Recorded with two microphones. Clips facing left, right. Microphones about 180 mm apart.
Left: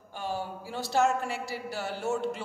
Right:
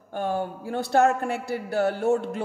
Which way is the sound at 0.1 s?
55° right (ahead or behind).